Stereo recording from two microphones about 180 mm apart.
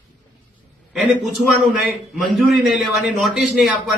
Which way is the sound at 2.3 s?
Centre (ahead or behind).